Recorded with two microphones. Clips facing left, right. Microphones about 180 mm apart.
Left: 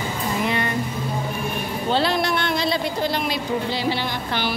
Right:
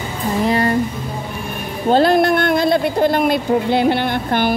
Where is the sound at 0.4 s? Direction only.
35° right (ahead or behind).